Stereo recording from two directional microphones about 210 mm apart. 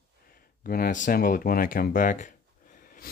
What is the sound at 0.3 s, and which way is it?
Speech, 45° left (ahead or behind).